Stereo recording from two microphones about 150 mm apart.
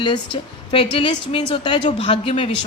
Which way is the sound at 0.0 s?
30° left (ahead or behind).